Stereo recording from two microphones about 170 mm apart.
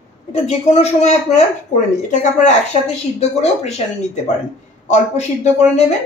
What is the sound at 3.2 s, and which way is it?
Speech, 40° left (ahead or behind).